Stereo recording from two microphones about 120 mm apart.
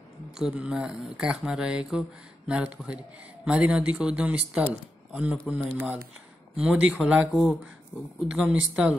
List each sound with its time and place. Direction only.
0.3 s speech: 5° right (ahead or behind)
7.9 s speech: 20° left (ahead or behind)
8.3 s speech: 5° right (ahead or behind)